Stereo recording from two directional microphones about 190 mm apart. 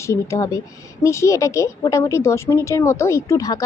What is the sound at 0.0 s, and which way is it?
A woman's voice, 15° left (ahead or behind).